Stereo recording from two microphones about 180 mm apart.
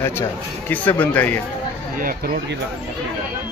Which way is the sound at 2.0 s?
50° right (ahead or behind).